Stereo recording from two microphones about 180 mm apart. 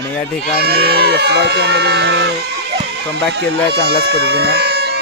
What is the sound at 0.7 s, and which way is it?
Speech, 60° right (ahead or behind).